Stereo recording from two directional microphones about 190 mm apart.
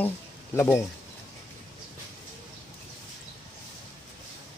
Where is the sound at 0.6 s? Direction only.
15° left (ahead or behind).